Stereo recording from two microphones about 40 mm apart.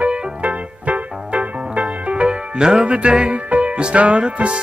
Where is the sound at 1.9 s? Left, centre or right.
Right.